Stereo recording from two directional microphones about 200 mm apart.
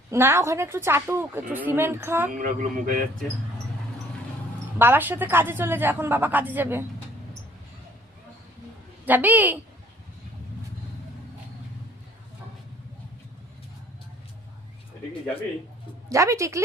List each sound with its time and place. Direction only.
0.1 s a woman's voice: 15° right (ahead or behind)
2.3 s a man's voice: 40° right (ahead or behind)
4.8 s a woman's voice: 10° right (ahead or behind)
9.0 s a woman's voice: 10° right (ahead or behind)
16.0 s a woman's voice: 15° right (ahead or behind)